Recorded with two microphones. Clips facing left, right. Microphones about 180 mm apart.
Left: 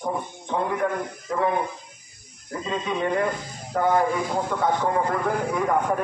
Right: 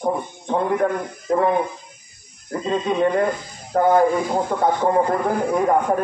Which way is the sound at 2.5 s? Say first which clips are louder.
Right 6 dB; 40° right (ahead or behind).